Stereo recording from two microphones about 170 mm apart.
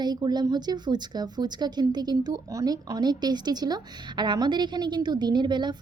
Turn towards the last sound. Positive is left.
turn(degrees=-25)  # may be behind; listen again after turning